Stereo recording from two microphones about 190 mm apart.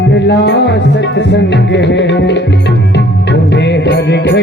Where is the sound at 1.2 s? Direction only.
65° left (ahead or behind).